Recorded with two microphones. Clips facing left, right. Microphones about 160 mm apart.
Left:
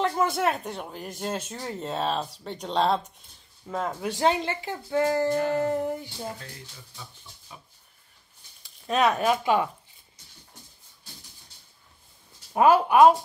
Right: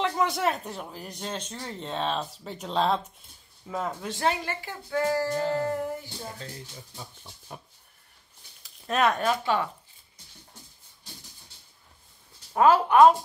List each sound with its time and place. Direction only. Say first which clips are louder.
0.0 s speech: left 1 dB; centre (ahead or behind)
4.0 s speech: left 6 dB; 15° left (ahead or behind)
7.0 s pig: even; 50° right (ahead or behind)
8.6 s speech: left 1 dB; centre (ahead or behind)
12.5 s speech: even; 15° left (ahead or behind)